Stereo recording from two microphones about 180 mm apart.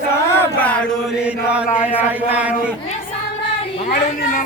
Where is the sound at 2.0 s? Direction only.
10° right (ahead or behind).